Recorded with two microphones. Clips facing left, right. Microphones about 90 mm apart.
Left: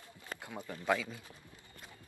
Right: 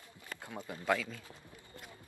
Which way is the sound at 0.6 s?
20° right (ahead or behind).